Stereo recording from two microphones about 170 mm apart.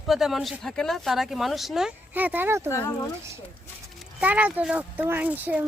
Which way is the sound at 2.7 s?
15° left (ahead or behind).